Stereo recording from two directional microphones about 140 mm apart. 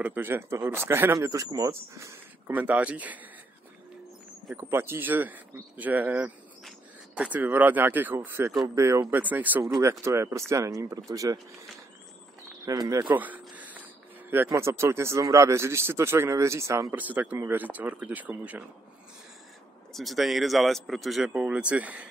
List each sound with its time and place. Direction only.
0.0 s speech: 15° right (ahead or behind)
4.6 s speech: 20° right (ahead or behind)
12.6 s speech: 25° right (ahead or behind)
13.0 s a sound: 10° right (ahead or behind)
14.3 s speech: 15° right (ahead or behind)
19.9 s speech: centre (ahead or behind)